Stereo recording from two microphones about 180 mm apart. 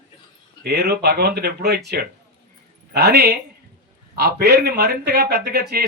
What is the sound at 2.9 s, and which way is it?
A man's voice, 65° right (ahead or behind).